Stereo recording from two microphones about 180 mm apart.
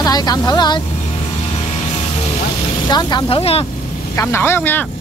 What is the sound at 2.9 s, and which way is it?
Speech, 25° left (ahead or behind).